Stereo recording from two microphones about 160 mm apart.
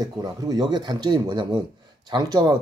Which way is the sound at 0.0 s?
25° right (ahead or behind).